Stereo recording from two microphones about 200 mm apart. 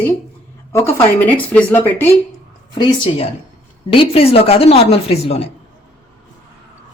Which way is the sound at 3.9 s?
25° left (ahead or behind).